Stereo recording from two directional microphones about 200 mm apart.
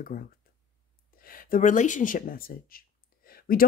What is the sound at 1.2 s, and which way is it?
A woman's voice, 45° left (ahead or behind).